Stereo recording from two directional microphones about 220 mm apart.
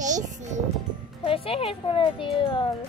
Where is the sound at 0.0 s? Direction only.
35° right (ahead or behind).